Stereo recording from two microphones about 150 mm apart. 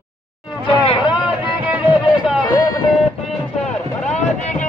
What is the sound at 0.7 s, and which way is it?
Chatter, 35° left (ahead or behind).